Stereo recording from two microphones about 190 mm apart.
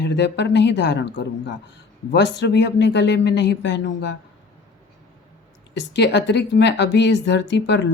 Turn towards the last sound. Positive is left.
turn(degrees=65)  # may be behind; listen again after turning